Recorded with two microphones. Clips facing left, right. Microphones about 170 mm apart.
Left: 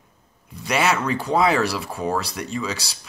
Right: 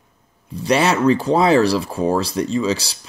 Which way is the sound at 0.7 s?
30° right (ahead or behind).